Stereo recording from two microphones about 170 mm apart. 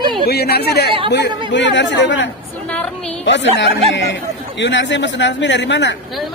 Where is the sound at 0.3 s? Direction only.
70° left (ahead or behind).